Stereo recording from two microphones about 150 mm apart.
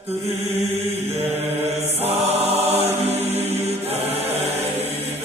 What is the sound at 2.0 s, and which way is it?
Music, 40° right (ahead or behind).